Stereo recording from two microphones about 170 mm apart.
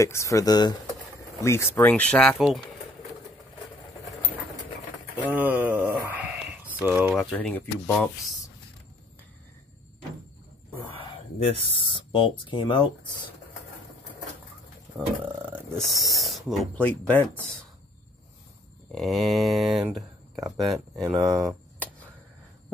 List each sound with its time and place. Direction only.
0.0 s speech: 15° left (ahead or behind); by 2.6 s centre (ahead or behind)
5.2 s a sound: 10° right (ahead or behind)
7.3 s speech: 10° left (ahead or behind)
11.4 s speech: 35° left (ahead or behind)
15.7 s speech: centre (ahead or behind)
18.9 s speech: centre (ahead or behind)
21.0 s speech: 25° right (ahead or behind)
21.5 s a sound: 10° left (ahead or behind)